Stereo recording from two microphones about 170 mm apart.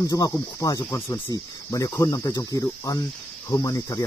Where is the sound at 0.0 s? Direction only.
20° left (ahead or behind).